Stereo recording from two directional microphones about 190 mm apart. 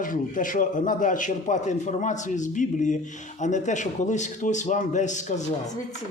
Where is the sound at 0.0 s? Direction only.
45° left (ahead or behind).